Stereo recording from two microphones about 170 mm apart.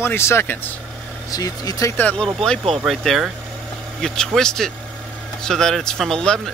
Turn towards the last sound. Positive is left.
turn(degrees=5)  # may be behind; listen again after turning